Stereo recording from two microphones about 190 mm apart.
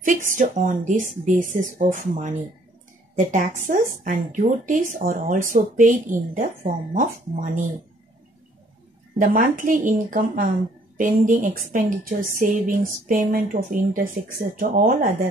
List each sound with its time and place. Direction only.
0.0 s a woman's voice: 45° right (ahead or behind)
9.2 s a woman's voice: 45° right (ahead or behind)